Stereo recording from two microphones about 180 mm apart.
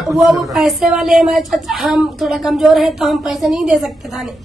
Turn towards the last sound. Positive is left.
turn(degrees=0)  # may be behind; listen again after turning